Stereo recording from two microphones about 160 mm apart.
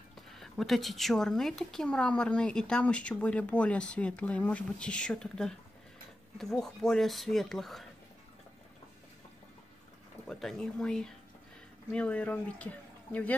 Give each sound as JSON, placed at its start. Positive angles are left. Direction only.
{"t": 0.3, "sound": "speech", "side_deg": 0}
{"t": 10.2, "sound": "speech", "side_deg": 5}